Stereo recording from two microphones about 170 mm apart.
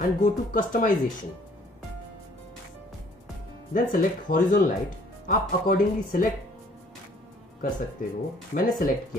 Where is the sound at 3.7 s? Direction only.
55° left (ahead or behind).